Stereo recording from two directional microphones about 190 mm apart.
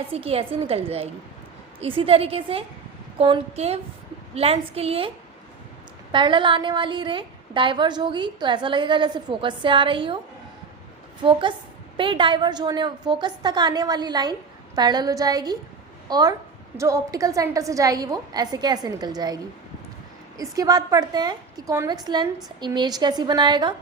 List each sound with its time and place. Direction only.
0.1 s a woman's voice: 30° right (ahead or behind)
11.2 s a woman's voice: 25° right (ahead or behind)
20.4 s a woman's voice: 20° right (ahead or behind)